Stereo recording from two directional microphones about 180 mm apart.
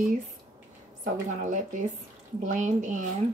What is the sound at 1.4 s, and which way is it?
Speech, 45° right (ahead or behind).